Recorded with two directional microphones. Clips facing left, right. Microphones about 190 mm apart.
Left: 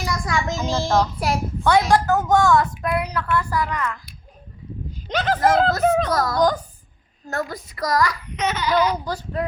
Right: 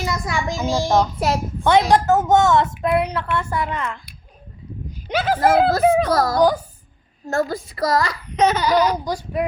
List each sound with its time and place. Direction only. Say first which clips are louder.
0.0 s a child's voice: right 1 dB; 20° right (ahead or behind)
5.0 s speech: right 1 dB; 10° right (ahead or behind)
6.1 s a child's voice: right 3 dB; 30° right (ahead or behind)
6.3 s speech: right 2 dB; 10° right (ahead or behind)
7.3 s a child's voice: right 6 dB; 30° right (ahead or behind)
8.4 s speech: right 2 dB; 40° right (ahead or behind)
9.0 s speech: right 3 dB; 15° right (ahead or behind)